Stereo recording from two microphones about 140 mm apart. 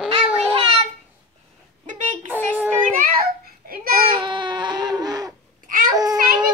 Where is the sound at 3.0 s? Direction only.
90° right.